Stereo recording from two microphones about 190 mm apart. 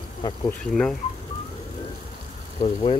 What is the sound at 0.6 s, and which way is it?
Speech, 5° left (ahead or behind).